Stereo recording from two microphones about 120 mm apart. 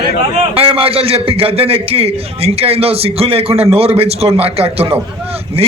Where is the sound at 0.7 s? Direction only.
50° right (ahead or behind).